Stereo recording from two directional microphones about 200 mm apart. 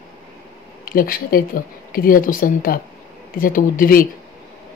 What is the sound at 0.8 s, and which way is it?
A woman's voice, 45° left (ahead or behind).